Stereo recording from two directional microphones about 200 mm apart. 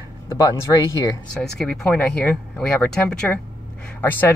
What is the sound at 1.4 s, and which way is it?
Speech, 5° left (ahead or behind).